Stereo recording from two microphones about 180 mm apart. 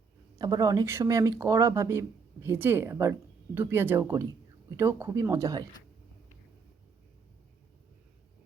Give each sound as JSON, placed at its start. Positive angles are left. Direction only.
{"t": 0.3, "sound": "speech", "side_deg": -20}